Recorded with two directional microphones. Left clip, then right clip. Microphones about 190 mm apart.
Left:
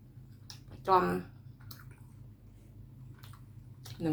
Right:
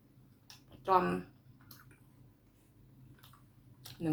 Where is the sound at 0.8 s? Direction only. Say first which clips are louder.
Left 2 dB; 15° left (ahead or behind).